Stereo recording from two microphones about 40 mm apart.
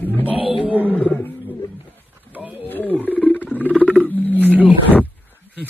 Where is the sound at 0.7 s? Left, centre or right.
Right.